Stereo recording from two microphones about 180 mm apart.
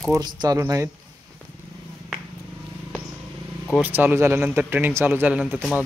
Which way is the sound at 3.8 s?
10° right (ahead or behind).